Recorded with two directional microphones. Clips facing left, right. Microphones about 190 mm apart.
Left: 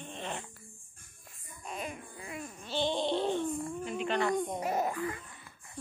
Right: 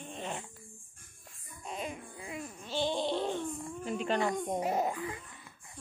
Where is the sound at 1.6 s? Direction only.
20° right (ahead or behind).